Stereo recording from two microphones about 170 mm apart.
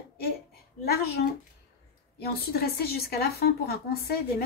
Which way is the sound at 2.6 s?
65° left (ahead or behind).